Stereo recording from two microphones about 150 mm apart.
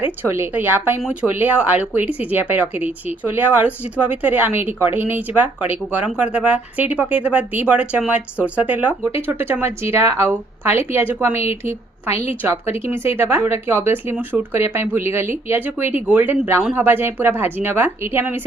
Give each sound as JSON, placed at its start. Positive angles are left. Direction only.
{"t": 0.0, "sound": "speech", "side_deg": -15}
{"t": 12.1, "sound": "a woman's voice", "side_deg": 45}
{"t": 12.4, "sound": "speech", "side_deg": -15}